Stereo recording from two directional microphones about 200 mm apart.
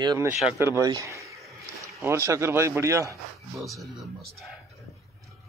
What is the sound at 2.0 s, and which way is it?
Speech, 15° right (ahead or behind).